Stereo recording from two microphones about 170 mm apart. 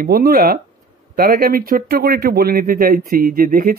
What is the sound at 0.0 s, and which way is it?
Speech, 60° right (ahead or behind).